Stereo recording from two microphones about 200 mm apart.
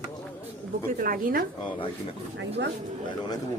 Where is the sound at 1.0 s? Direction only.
45° right (ahead or behind).